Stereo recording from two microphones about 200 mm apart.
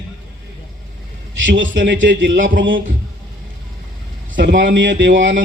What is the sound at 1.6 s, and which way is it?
A man's voice, 65° right (ahead or behind).